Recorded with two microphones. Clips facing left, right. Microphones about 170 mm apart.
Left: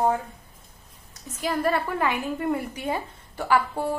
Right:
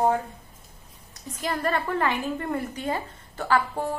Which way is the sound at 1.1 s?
5° left (ahead or behind).